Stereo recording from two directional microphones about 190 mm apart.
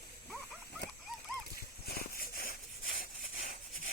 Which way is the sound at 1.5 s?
55° left (ahead or behind).